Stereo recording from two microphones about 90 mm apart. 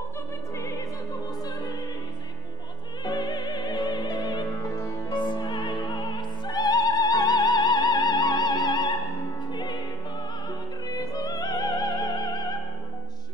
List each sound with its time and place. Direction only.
3.0 s opera: 50° left (ahead or behind)
5.1 s music: 55° left (ahead or behind)
10.9 s music: 45° left (ahead or behind)